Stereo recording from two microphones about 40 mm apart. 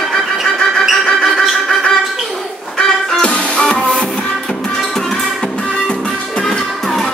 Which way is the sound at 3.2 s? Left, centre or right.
Left.